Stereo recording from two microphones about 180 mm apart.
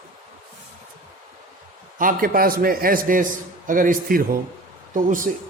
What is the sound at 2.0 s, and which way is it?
Speech, 50° right (ahead or behind).